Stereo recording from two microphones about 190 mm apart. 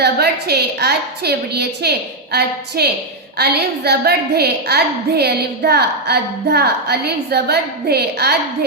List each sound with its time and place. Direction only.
0.0 s a woman's voice: 60° right (ahead or behind)